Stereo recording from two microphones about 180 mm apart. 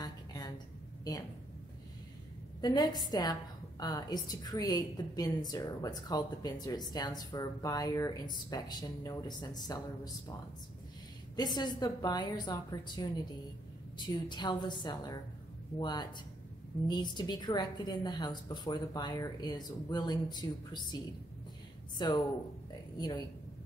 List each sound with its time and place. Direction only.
0.0 s a sound: 20° left (ahead or behind)
2.6 s a woman's voice: 20° left (ahead or behind)
11.3 s a woman's voice: 25° left (ahead or behind)